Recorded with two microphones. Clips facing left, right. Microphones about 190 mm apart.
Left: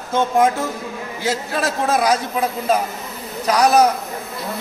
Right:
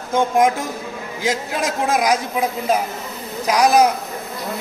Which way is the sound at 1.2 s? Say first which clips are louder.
Even; 15° right (ahead or behind).